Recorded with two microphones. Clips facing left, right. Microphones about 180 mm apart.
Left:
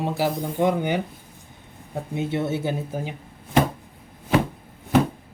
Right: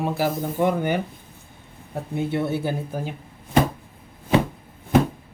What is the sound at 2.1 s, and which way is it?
Speech, 20° left (ahead or behind).